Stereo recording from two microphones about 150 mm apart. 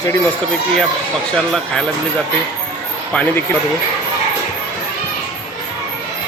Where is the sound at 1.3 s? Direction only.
5° left (ahead or behind).